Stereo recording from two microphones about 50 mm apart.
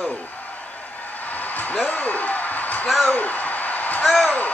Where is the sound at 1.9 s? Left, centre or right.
Left.